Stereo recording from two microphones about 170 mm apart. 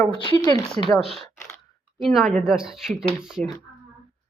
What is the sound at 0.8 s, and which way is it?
Speech, 40° right (ahead or behind).